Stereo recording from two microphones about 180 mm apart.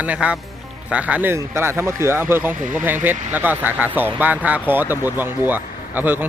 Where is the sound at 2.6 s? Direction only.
45° right (ahead or behind).